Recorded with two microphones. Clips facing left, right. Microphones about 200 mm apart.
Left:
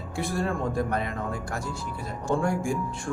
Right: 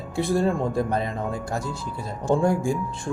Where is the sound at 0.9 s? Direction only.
30° right (ahead or behind).